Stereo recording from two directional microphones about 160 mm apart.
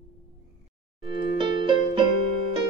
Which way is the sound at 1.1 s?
30° right (ahead or behind).